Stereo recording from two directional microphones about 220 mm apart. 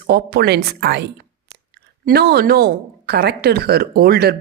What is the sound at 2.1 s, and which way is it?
A woman's voice, 45° right (ahead or behind).